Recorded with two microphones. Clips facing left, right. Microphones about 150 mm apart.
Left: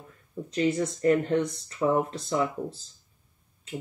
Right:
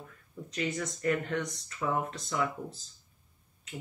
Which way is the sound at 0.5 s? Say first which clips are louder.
Left 8 dB; 30° left (ahead or behind).